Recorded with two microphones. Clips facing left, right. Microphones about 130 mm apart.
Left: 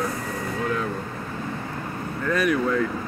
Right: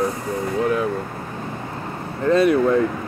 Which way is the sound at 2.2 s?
25° right (ahead or behind).